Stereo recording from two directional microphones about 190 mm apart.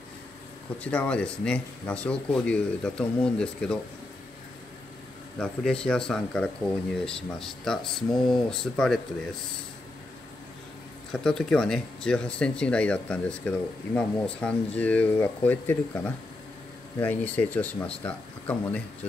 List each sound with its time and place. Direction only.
0.8 s speech: 5° left (ahead or behind)
5.4 s speech: 5° left (ahead or behind)
11.1 s speech: 5° left (ahead or behind)